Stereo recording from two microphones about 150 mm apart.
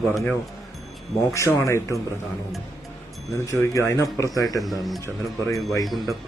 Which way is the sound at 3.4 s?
20° left (ahead or behind).